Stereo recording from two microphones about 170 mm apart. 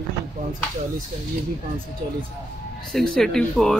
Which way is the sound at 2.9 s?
5° left (ahead or behind).